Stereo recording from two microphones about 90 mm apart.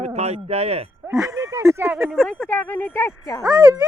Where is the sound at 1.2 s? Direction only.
35° right (ahead or behind).